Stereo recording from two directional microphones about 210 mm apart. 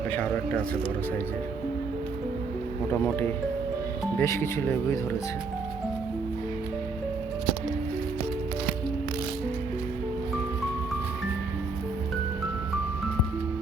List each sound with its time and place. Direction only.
3.0 s speech: 10° left (ahead or behind)